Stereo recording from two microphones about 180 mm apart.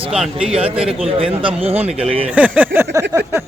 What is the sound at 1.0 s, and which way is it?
Speech, 30° right (ahead or behind).